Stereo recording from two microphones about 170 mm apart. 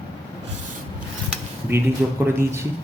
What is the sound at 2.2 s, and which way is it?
Speech, 15° right (ahead or behind).